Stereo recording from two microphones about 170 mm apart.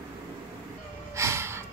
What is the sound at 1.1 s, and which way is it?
Gasp, 15° right (ahead or behind).